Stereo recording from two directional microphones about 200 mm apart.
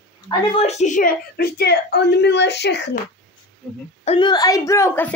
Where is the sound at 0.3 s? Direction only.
30° left (ahead or behind); by 2.9 s 60° left (ahead or behind).